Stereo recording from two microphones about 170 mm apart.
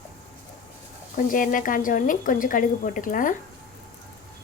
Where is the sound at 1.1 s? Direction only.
50° left (ahead or behind).